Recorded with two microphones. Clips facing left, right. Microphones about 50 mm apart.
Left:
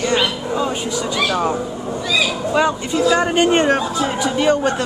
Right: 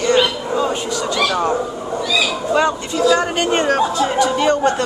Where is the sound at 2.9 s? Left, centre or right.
Left; by 4.7 s centre.